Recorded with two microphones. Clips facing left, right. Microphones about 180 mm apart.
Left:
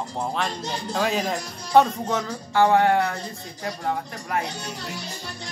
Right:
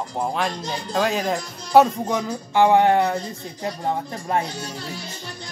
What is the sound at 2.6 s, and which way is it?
Speech, 15° right (ahead or behind).